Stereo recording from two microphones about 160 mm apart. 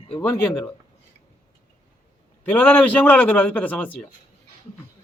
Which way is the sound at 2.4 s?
10° left (ahead or behind).